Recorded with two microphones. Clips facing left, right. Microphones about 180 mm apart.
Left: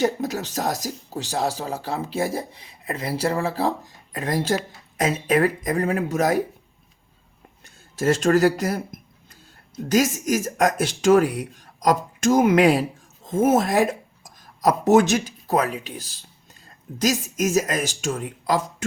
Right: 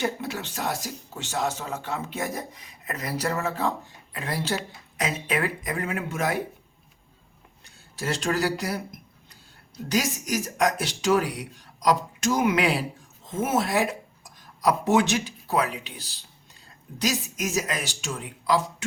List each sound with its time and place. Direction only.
0.0 s speech: 40° left (ahead or behind)
7.6 s speech: 45° left (ahead or behind)